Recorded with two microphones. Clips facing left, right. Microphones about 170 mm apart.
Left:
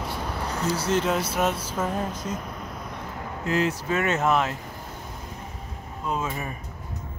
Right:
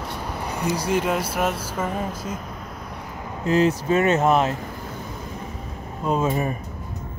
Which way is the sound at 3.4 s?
25° right (ahead or behind).